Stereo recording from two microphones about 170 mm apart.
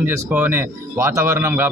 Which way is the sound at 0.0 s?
10° right (ahead or behind).